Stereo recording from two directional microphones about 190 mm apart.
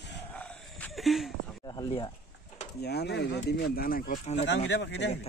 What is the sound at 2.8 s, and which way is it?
Speech, 60° left (ahead or behind).